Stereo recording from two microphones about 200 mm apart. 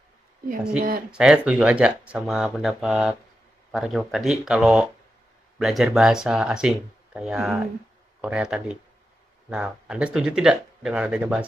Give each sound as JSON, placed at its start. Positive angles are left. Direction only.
{"t": 0.7, "sound": "speech", "side_deg": -45}
{"t": 1.1, "sound": "speech", "side_deg": -5}